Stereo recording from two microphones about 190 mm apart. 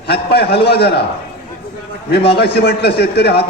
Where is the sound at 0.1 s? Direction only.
55° left (ahead or behind).